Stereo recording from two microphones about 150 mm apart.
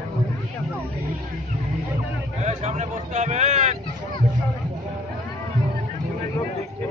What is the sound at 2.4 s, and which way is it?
Vehicle, 50° right (ahead or behind).